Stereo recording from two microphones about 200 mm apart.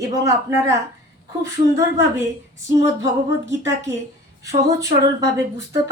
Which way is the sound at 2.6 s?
15° right (ahead or behind).